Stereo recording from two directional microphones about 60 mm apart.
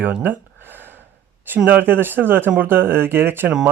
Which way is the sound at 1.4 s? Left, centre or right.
Right.